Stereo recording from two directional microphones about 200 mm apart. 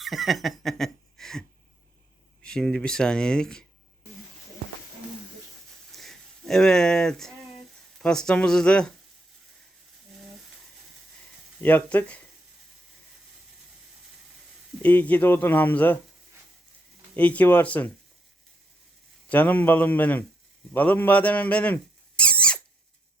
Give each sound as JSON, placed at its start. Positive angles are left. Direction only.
{"t": 0.0, "sound": "speech", "side_deg": 0}
{"t": 5.9, "sound": "a sound", "side_deg": 0}
{"t": 8.0, "sound": "speech", "side_deg": 5}
{"t": 11.6, "sound": "speech", "side_deg": 10}
{"t": 14.8, "sound": "speech", "side_deg": 10}
{"t": 17.2, "sound": "speech", "side_deg": 10}
{"t": 19.3, "sound": "speech", "side_deg": 10}
{"t": 22.2, "sound": "squeak", "side_deg": 5}